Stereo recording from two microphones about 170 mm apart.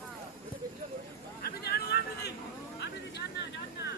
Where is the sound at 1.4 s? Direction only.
70° left (ahead or behind).